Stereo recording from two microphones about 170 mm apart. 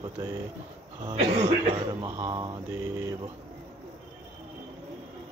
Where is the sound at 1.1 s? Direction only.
35° right (ahead or behind); by 3.1 s 15° right (ahead or behind).